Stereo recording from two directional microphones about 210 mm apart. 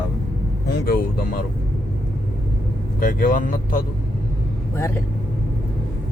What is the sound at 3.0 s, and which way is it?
Speech, 40° left (ahead or behind).